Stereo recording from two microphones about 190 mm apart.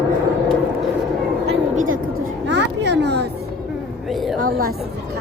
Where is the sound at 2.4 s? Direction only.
65° right (ahead or behind).